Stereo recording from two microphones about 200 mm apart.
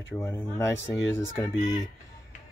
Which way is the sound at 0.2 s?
15° left (ahead or behind).